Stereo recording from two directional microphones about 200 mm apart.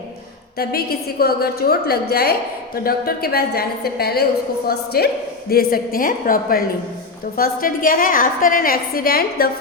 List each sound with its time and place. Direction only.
0.6 s a woman's voice: 50° left (ahead or behind)